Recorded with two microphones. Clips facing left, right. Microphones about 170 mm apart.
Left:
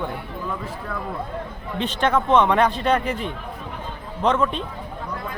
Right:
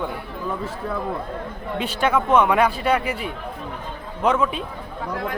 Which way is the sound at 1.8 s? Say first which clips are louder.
Even; 10° right (ahead or behind).